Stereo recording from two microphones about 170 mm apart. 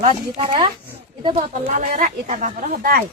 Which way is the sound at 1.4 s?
45° right (ahead or behind).